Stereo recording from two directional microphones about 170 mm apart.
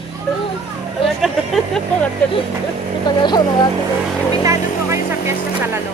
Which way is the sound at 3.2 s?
25° left (ahead or behind).